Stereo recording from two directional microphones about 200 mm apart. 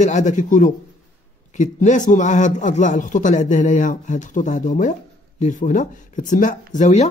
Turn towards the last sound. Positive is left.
turn(degrees=35)  # may be behind; listen again after turning